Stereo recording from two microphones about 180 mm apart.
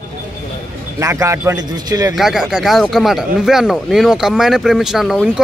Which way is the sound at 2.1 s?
Centre (ahead or behind).